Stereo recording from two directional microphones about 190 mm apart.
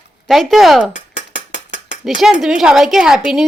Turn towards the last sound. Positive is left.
turn(degrees=-5)  # may be behind; listen again after turning